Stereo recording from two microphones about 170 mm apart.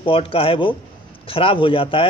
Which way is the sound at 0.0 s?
30° left (ahead or behind).